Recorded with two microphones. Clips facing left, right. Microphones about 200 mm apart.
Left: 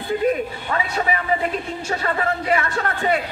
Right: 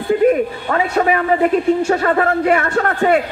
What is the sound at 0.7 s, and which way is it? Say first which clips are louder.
A man's voice: right 7 dB; 50° right (ahead or behind).